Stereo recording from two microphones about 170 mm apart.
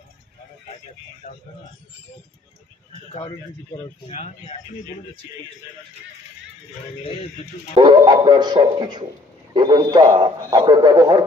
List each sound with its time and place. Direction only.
3.3 s speech: 20° left (ahead or behind)
4.1 s speech: 40° left (ahead or behind)
7.0 s speech: 35° left (ahead or behind)
7.7 s a man's voice: 30° right (ahead or behind)